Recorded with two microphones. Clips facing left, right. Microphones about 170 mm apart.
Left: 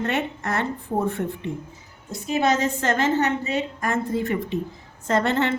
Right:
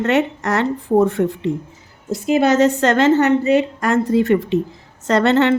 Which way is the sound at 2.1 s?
80° right.